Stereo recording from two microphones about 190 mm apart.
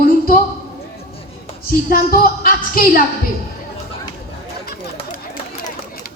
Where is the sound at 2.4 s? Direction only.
50° left (ahead or behind).